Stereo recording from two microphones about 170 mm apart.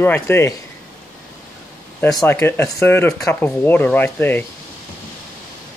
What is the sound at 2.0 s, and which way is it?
Speech, 10° left (ahead or behind).